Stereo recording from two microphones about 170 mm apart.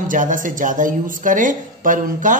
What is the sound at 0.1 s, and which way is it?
A woman's voice, 50° right (ahead or behind).